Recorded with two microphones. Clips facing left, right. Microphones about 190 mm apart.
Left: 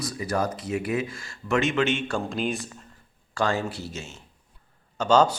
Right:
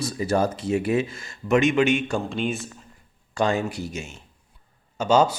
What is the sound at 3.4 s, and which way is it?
Speech, 20° right (ahead or behind).